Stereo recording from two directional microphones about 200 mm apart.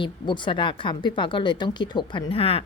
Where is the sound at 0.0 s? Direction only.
25° left (ahead or behind).